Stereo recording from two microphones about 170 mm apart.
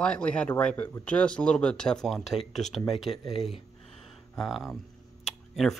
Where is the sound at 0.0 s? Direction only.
5° left (ahead or behind).